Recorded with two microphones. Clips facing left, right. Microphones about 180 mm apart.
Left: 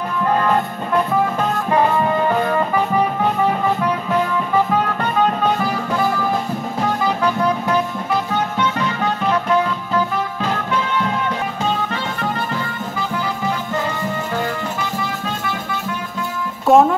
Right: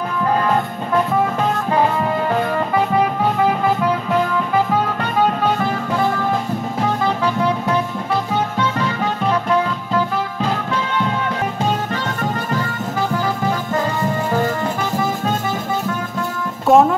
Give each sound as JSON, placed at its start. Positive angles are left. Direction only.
{"t": 16.6, "sound": "music", "side_deg": 0}